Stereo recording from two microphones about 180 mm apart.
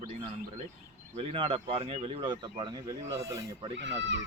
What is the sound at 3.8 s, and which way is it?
Speech, 90° right.